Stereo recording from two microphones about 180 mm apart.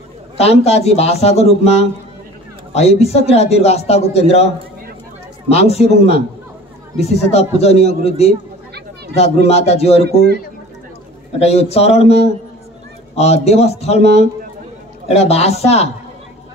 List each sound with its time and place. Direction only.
0.4 s a man's voice: 35° left (ahead or behind)
5.5 s a man's voice: 35° left (ahead or behind)
11.3 s a man's voice: 35° left (ahead or behind)